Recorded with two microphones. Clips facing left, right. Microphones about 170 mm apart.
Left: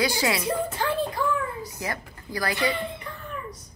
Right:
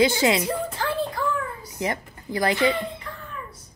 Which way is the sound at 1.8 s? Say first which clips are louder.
Right 5 dB; 20° right (ahead or behind).